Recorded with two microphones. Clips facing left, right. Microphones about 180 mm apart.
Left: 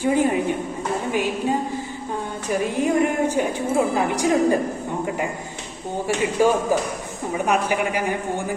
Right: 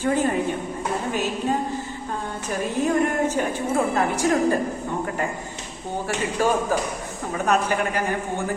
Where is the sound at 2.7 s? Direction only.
15° left (ahead or behind).